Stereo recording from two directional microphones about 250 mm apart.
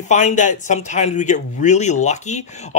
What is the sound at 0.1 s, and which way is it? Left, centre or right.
Speech, left.